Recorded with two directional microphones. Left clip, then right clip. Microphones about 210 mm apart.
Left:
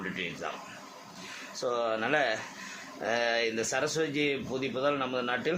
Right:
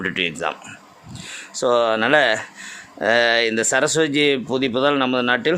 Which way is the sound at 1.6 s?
55° right (ahead or behind).